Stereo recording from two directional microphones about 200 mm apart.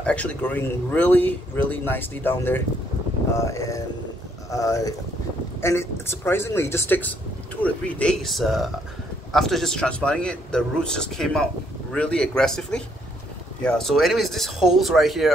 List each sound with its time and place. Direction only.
0.0 s a man's voice: 5° left (ahead or behind)